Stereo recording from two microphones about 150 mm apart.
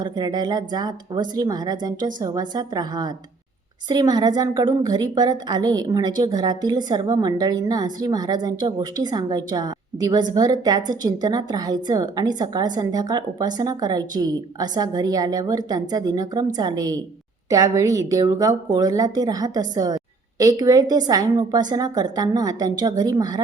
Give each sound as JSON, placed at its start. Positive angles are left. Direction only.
{"t": 0.0, "sound": "a woman's voice", "side_deg": -25}